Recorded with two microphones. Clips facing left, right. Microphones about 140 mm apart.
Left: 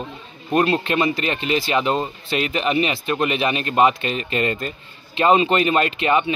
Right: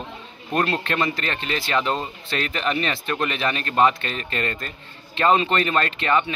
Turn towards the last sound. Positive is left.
turn(degrees=15)  # may be behind; listen again after turning